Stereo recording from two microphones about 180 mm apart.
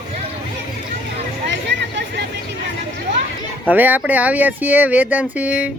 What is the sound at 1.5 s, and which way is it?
Chatter, 75° right (ahead or behind).